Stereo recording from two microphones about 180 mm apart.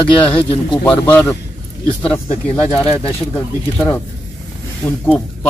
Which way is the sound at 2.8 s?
35° left (ahead or behind).